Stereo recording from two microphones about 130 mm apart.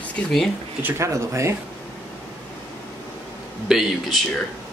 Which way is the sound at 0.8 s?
20° right (ahead or behind).